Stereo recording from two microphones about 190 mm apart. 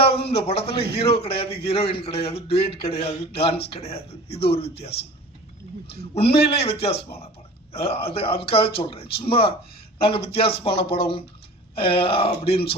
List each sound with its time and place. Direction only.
0.0 s a sound: 30° left (ahead or behind)
0.9 s speech: 30° left (ahead or behind)
6.0 s speech: 30° left (ahead or behind)